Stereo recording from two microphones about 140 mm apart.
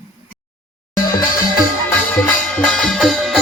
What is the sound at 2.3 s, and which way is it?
Music, 5° left (ahead or behind).